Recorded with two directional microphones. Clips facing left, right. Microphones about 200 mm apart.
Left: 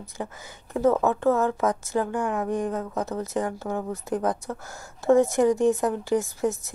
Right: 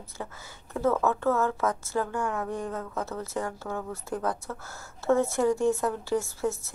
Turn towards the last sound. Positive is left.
turn(degrees=15)  # may be behind; listen again after turning